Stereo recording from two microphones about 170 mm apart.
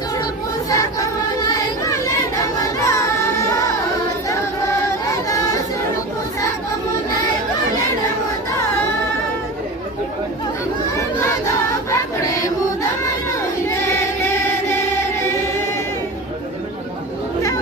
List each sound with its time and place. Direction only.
0.7 s music: 20° left (ahead or behind)
13.7 s choir: 15° left (ahead or behind)